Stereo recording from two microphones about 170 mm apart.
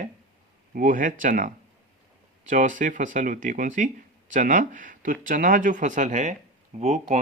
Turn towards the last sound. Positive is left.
turn(degrees=-40)  # may be behind; listen again after turning